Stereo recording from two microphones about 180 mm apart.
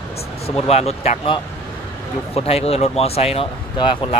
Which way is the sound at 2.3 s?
35° left (ahead or behind).